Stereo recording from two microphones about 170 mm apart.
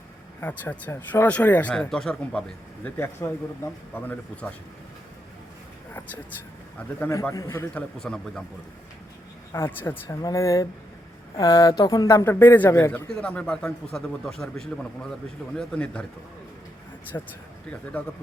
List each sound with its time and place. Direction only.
0.3 s speech: 10° left (ahead or behind)
2.8 s speech: 15° left (ahead or behind)
7.1 s speech: 20° left (ahead or behind)
7.7 s a man's voice: 5° left (ahead or behind)
9.5 s a man's voice: 15° left (ahead or behind)
17.1 s speech: 15° left (ahead or behind)